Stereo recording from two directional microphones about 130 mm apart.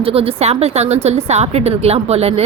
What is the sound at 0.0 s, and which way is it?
A woman's voice, 45° right (ahead or behind).